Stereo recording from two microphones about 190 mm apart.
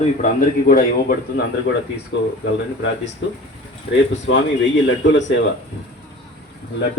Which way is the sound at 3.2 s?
75° left (ahead or behind).